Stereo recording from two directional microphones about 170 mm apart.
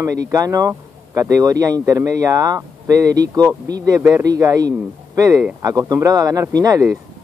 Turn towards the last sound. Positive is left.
turn(degrees=-20)  # may be behind; listen again after turning